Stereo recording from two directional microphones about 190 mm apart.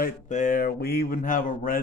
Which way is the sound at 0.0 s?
40° left (ahead or behind).